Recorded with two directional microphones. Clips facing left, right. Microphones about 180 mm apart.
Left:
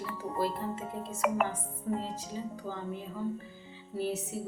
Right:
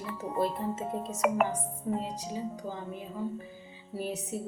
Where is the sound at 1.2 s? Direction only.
5° right (ahead or behind).